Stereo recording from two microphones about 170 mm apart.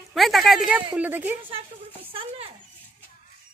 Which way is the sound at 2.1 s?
30° right (ahead or behind).